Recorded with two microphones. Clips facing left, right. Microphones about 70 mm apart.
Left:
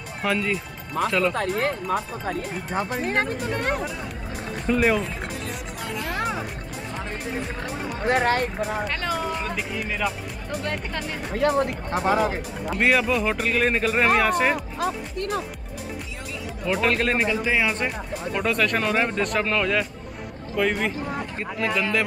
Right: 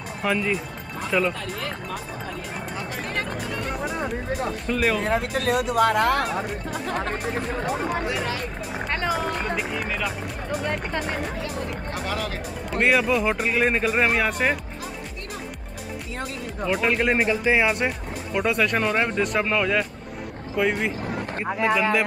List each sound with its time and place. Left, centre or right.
0.2 s speech: centre
1.3 s speech: left
4.6 s speech: centre
5.0 s speech: right
8.0 s speech: left
9.1 s speech: centre
10.6 s speech: centre
11.3 s speech: left
11.9 s speech: left
12.6 s speech: centre
14.8 s speech: left
16.6 s speech: centre